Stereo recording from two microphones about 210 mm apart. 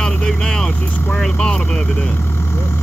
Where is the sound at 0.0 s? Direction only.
5° left (ahead or behind).